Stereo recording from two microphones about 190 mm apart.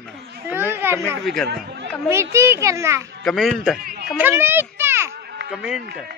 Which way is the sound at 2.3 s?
15° right (ahead or behind).